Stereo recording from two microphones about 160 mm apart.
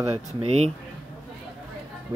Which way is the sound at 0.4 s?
40° right (ahead or behind).